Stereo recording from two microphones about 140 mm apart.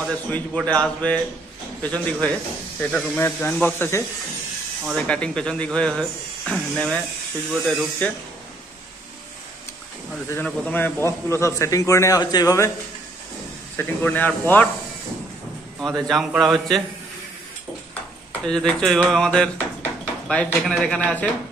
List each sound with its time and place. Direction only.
0.0 s a man's voice: 5° left (ahead or behind)
10.3 s a man's voice: 10° left (ahead or behind)
13.7 s a man's voice: 10° left (ahead or behind)
15.8 s speech: centre (ahead or behind)
18.4 s speech: 5° left (ahead or behind)